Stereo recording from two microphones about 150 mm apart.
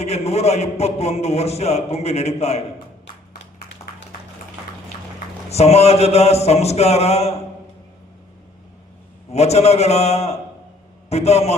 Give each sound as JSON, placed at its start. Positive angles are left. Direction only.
{"t": 0.0, "sound": "a man's voice", "side_deg": 45}
{"t": 5.5, "sound": "a man's voice", "side_deg": 45}
{"t": 9.3, "sound": "a man's voice", "side_deg": 45}